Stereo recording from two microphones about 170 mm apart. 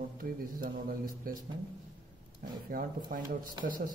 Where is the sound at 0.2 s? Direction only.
60° right (ahead or behind).